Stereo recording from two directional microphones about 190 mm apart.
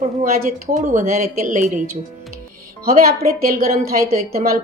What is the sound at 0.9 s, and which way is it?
Speech, 40° right (ahead or behind).